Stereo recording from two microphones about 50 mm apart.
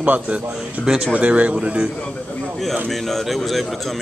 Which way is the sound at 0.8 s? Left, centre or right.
Centre.